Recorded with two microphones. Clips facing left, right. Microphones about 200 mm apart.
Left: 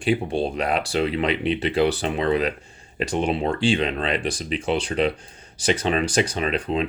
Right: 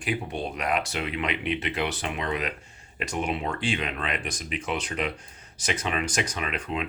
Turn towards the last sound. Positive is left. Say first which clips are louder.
# left 7 dB
turn(degrees=30)  # may be behind; listen again after turning